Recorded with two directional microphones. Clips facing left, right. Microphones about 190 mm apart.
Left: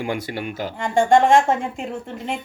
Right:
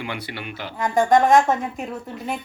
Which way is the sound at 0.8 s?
25° left (ahead or behind).